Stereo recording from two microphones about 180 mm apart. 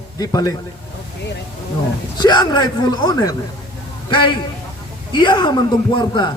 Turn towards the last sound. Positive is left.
turn(degrees=25)  # may be behind; listen again after turning